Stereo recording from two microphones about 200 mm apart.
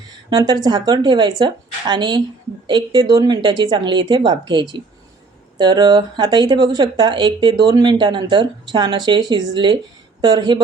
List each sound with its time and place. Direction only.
0.3 s speech: 20° right (ahead or behind)